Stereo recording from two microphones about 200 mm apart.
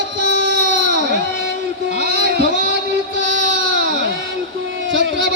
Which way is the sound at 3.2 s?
65° right (ahead or behind).